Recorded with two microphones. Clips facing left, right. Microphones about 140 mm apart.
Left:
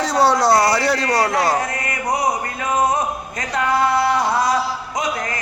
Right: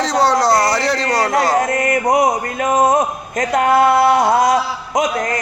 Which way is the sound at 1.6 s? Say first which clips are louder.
Right 8 dB; 45° right (ahead or behind).